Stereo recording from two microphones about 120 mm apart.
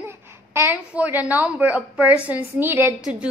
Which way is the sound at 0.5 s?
20° right (ahead or behind).